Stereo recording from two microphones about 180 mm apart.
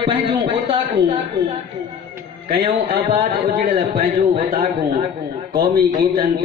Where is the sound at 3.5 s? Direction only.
50° right (ahead or behind).